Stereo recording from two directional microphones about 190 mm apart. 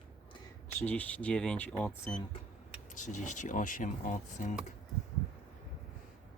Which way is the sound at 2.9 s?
40° left (ahead or behind).